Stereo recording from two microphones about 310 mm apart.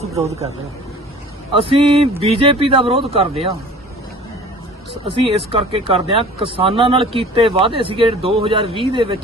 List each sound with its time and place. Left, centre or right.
0.0 s speech: right
1.5 s speech: centre
5.2 s speech: centre